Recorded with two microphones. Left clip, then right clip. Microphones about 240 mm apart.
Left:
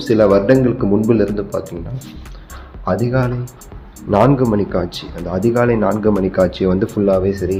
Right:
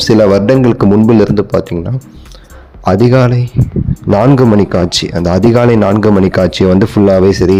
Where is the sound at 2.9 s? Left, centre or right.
Right.